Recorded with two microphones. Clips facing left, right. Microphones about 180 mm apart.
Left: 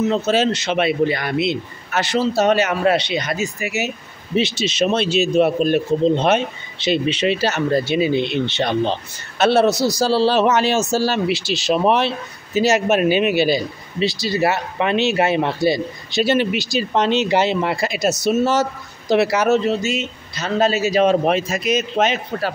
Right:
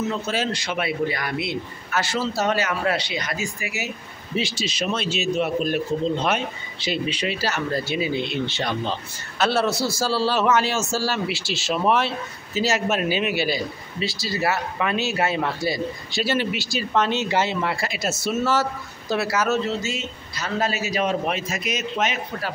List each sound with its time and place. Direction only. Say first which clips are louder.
0.1 s a man's voice: left 8 dB; 25° left (ahead or behind)